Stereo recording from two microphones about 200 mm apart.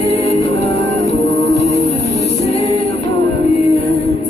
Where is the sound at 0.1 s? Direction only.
30° left (ahead or behind).